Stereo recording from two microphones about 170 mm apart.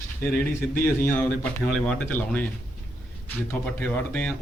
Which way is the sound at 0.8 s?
10° left (ahead or behind).